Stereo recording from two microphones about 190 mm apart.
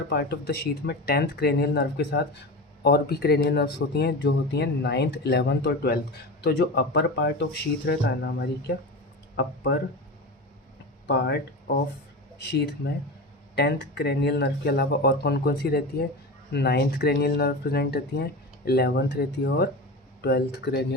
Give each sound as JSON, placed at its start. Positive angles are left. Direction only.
{"t": 0.1, "sound": "speech", "side_deg": 55}
{"t": 11.0, "sound": "speech", "side_deg": 65}
{"t": 12.4, "sound": "speech", "side_deg": 60}